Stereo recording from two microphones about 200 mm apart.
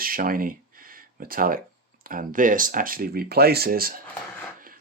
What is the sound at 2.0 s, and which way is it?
Speech, 40° right (ahead or behind).